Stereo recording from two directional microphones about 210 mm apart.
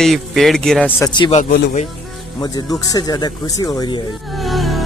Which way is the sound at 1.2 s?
30° left (ahead or behind).